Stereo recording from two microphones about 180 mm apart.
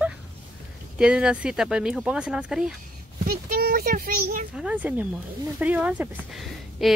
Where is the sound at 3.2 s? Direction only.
55° right (ahead or behind).